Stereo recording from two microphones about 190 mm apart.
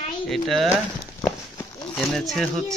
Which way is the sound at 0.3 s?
Centre (ahead or behind).